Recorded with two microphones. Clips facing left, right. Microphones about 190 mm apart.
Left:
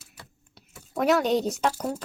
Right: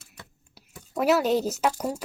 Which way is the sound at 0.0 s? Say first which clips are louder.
Right 1 dB; centre (ahead or behind).